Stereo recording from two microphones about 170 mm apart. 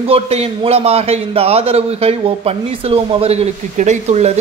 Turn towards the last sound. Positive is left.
turn(degrees=-40)  # may be behind; listen again after turning